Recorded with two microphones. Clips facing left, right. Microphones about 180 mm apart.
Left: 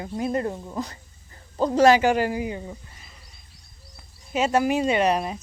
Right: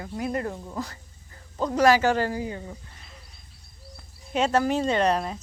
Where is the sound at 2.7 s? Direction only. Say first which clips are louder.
Left 2 dB; 5° left (ahead or behind).